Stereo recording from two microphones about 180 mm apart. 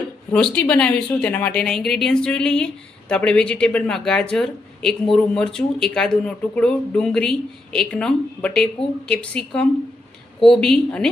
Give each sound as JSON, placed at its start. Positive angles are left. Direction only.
{"t": 0.3, "sound": "speech", "side_deg": 5}